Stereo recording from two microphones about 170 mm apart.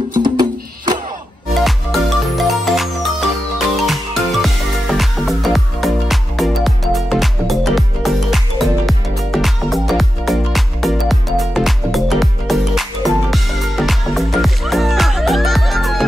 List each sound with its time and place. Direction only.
0.1 s music: 25° right (ahead or behind)
1.5 s music: centre (ahead or behind)